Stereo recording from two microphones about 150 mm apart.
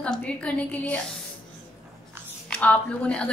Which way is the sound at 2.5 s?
10° left (ahead or behind).